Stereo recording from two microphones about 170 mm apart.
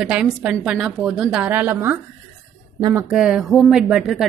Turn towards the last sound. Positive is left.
turn(degrees=0)  # may be behind; listen again after turning